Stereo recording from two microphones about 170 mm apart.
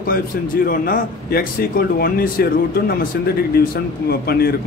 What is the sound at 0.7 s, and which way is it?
Speech, 55° left (ahead or behind).